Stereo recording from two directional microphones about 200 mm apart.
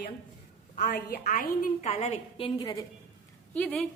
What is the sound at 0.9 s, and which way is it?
Speech, 55° left (ahead or behind).